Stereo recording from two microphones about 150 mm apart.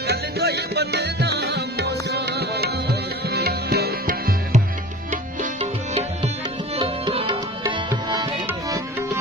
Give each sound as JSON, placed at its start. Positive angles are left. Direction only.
{"t": 0.0, "sound": "music", "side_deg": -90}
{"t": 6.8, "sound": "tabla", "side_deg": -30}
{"t": 8.5, "sound": "music", "side_deg": -15}